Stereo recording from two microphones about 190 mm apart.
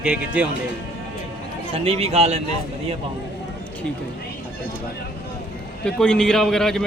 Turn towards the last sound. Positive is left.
turn(degrees=5)  # may be behind; listen again after turning